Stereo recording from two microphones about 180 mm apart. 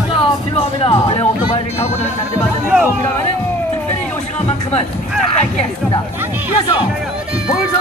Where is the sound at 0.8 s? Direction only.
30° left (ahead or behind).